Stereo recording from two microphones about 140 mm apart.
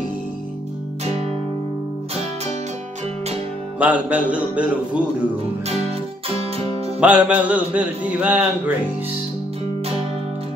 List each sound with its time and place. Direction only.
1.0 s music: 50° right (ahead or behind)
3.8 s a man's voice: 10° right (ahead or behind)
5.7 s music: 45° right (ahead or behind)
7.0 s a man's voice: 10° right (ahead or behind)